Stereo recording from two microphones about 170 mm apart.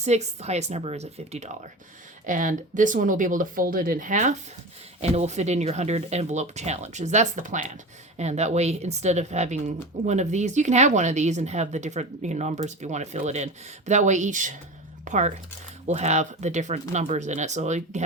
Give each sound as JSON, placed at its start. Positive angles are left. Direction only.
{"t": 0.0, "sound": "speech", "side_deg": -40}
{"t": 2.2, "sound": "speech", "side_deg": -50}